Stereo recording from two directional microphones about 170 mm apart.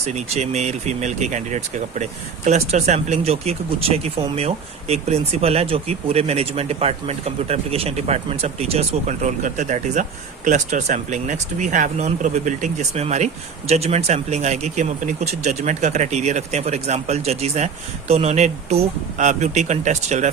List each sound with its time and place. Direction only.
0.0 s speech: 40° right (ahead or behind)